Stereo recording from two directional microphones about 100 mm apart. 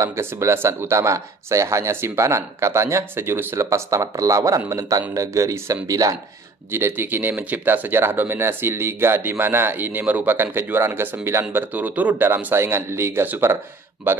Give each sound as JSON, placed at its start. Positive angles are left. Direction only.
{"t": 0.0, "sound": "speech", "side_deg": -25}
{"t": 6.7, "sound": "speech", "side_deg": -20}